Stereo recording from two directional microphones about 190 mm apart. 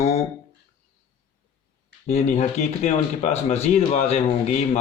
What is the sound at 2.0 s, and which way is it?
Speech, 35° left (ahead or behind).